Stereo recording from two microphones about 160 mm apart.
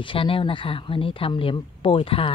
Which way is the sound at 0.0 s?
35° left (ahead or behind).